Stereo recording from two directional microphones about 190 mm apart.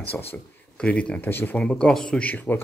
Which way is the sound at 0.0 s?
10° left (ahead or behind).